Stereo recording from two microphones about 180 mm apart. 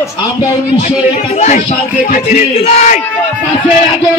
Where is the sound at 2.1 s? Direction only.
35° left (ahead or behind).